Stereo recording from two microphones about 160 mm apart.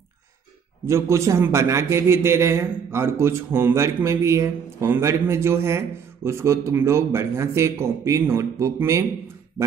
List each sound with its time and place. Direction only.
0.8 s a man's voice: 20° right (ahead or behind)